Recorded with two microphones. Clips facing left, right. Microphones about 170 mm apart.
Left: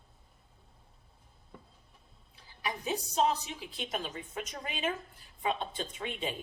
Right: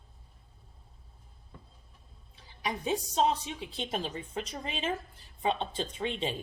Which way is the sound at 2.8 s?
30° right (ahead or behind).